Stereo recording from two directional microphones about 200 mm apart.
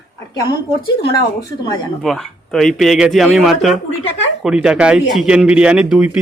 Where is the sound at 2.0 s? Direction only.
Centre (ahead or behind).